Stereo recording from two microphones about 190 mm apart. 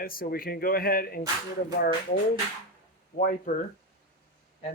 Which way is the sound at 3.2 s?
45° left (ahead or behind).